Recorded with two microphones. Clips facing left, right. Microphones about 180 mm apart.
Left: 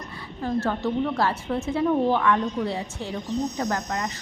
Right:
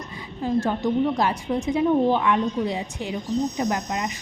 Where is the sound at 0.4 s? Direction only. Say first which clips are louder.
Right 2 dB; 15° right (ahead or behind).